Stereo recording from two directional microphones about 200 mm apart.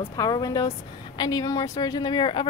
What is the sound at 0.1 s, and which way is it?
A woman's voice, 20° left (ahead or behind).